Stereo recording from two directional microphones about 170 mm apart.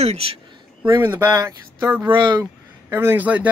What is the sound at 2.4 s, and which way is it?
Speech, 15° right (ahead or behind).